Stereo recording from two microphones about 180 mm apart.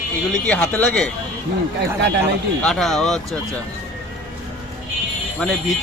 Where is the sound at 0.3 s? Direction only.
5° left (ahead or behind).